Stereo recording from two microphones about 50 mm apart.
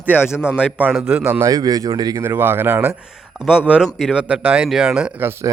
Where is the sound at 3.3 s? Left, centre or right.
Centre.